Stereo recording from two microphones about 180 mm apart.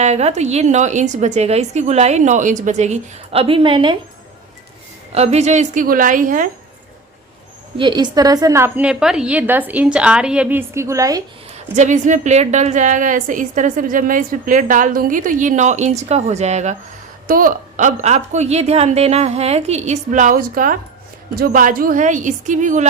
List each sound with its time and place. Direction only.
0.0 s a woman's voice: 40° right (ahead or behind)
5.1 s a woman's voice: 35° right (ahead or behind)
7.8 s a woman's voice: 25° right (ahead or behind)
11.7 s a woman's voice: 40° right (ahead or behind)
17.2 s a woman's voice: 50° right (ahead or behind)